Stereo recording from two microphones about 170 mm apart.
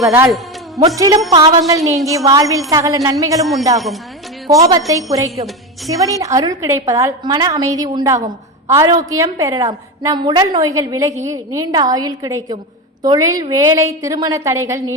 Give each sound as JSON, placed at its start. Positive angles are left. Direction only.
{"t": 0.0, "sound": "a woman's voice", "side_deg": -15}
{"t": 4.4, "sound": "a woman's voice", "side_deg": -20}